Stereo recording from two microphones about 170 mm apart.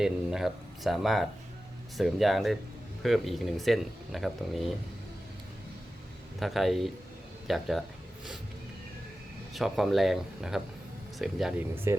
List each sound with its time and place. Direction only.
0.0 s speech: 5° right (ahead or behind)
6.4 s speech: centre (ahead or behind)
7.4 s a sound: centre (ahead or behind)
9.5 s speech: centre (ahead or behind)